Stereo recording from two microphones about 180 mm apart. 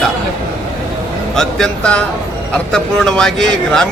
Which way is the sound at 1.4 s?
5° left (ahead or behind).